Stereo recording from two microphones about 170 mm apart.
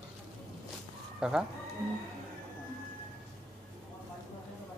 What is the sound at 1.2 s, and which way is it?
Speech, 5° right (ahead or behind).